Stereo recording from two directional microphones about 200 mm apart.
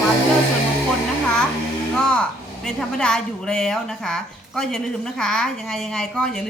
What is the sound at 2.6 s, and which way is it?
A woman's voice, 5° left (ahead or behind).